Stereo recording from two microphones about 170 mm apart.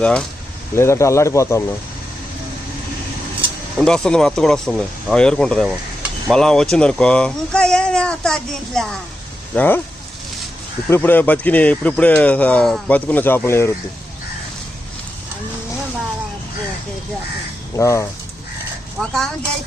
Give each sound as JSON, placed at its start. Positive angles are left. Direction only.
{"t": 0.0, "sound": "speech", "side_deg": 5}
{"t": 3.8, "sound": "speech", "side_deg": 5}
{"t": 10.8, "sound": "speech", "side_deg": 15}
{"t": 17.7, "sound": "speech", "side_deg": 20}
{"t": 18.9, "sound": "speech", "side_deg": 0}